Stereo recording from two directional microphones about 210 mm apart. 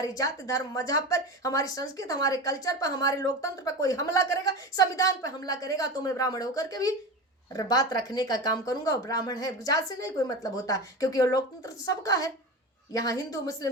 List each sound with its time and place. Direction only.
0.0 s a woman's voice: 15° left (ahead or behind)